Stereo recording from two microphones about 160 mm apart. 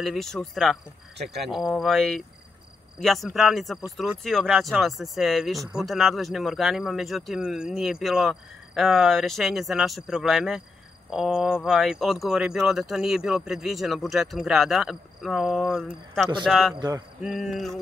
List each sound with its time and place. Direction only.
0.0 s speech: centre (ahead or behind)
16.7 s cricket: 25° right (ahead or behind)
17.2 s speech: 5° right (ahead or behind)